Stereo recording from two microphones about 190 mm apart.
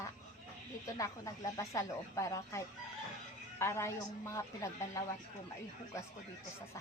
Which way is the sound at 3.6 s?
15° left (ahead or behind).